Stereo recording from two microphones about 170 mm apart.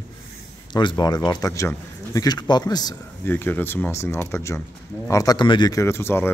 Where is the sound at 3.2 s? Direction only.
10° left (ahead or behind).